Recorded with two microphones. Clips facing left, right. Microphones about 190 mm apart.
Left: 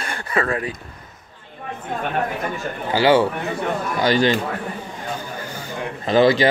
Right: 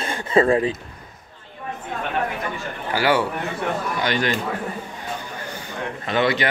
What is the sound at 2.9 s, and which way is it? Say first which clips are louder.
A man's voice: left 4 dB; 25° left (ahead or behind).